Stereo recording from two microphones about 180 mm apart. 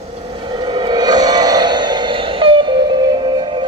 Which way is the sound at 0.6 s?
25° right (ahead or behind).